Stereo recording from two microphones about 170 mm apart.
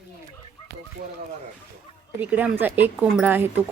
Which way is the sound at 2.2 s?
10° right (ahead or behind).